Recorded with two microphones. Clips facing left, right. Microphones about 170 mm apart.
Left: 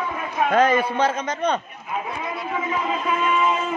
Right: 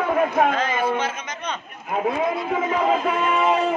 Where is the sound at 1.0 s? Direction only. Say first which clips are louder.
Left 5 dB; 35° left (ahead or behind).